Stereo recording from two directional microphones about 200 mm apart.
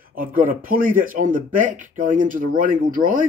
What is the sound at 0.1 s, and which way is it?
Speech, 45° right (ahead or behind).